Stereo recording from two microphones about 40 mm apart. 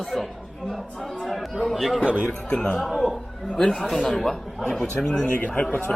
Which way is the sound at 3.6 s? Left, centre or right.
Centre.